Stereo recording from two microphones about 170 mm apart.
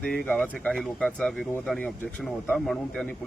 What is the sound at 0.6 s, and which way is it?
Speech, 10° left (ahead or behind).